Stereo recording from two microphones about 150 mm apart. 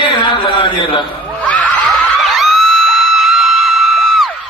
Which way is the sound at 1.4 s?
10° left (ahead or behind).